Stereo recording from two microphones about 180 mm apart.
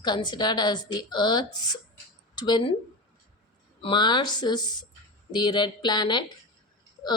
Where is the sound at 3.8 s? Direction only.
25° left (ahead or behind).